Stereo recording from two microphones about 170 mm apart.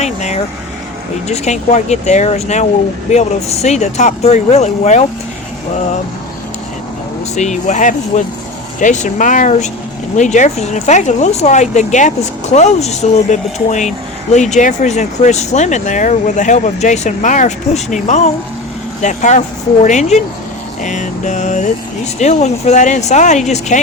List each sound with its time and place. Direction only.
0.0 s vehicle: 40° left (ahead or behind)
1.3 s speech: 40° left (ahead or behind)
7.3 s speech: 45° left (ahead or behind)